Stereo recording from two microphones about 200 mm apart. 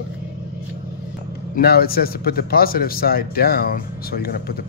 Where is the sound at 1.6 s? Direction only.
50° left (ahead or behind).